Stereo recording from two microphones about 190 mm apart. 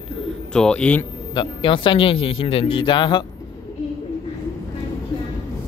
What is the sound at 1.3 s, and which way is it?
A man's voice, 25° left (ahead or behind).